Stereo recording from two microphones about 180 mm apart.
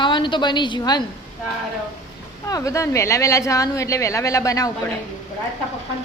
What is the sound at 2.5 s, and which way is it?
A woman's voice, 20° left (ahead or behind).